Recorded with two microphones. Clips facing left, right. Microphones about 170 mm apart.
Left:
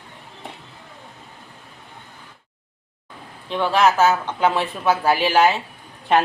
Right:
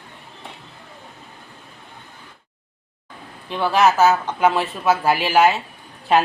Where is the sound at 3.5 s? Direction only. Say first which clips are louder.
Right 1 dB; 10° right (ahead or behind).